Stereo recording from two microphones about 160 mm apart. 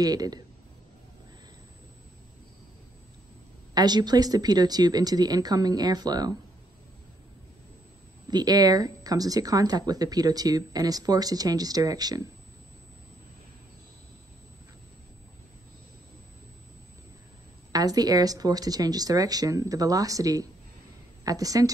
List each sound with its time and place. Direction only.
0.0 s speech: 25° right (ahead or behind)
3.7 s speech: 25° right (ahead or behind)
8.3 s speech: 25° right (ahead or behind)
17.7 s a woman's voice: 25° right (ahead or behind)